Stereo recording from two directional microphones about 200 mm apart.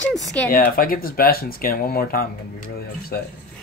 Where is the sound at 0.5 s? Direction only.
45° left (ahead or behind).